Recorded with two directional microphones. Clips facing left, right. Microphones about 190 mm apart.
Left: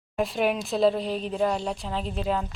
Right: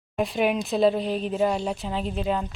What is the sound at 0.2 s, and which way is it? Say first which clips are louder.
A woman's voice: right 1 dB; centre (ahead or behind).